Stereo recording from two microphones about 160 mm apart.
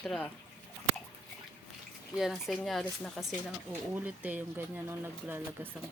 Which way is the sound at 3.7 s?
10° right (ahead or behind).